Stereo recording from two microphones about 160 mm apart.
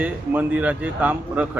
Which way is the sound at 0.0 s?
10° right (ahead or behind).